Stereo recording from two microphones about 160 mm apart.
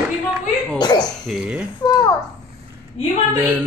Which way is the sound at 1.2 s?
5° right (ahead or behind).